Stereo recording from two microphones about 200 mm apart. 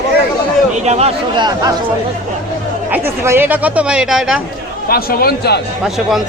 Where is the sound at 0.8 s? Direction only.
30° right (ahead or behind).